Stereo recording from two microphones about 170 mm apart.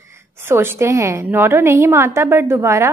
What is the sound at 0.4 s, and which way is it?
A woman's voice, 15° right (ahead or behind).